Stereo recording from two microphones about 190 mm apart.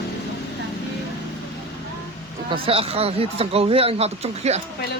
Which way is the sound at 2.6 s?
30° right (ahead or behind).